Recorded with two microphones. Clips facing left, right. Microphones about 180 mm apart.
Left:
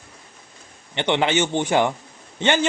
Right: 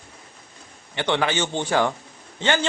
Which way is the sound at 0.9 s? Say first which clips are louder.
Left 3 dB; 20° left (ahead or behind).